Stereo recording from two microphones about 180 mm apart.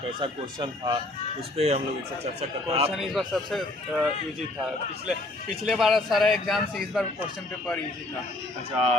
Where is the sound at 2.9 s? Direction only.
Centre (ahead or behind).